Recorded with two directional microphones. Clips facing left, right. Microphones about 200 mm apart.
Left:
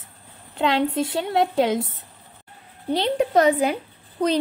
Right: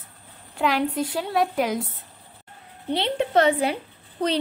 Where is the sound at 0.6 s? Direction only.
25° left (ahead or behind).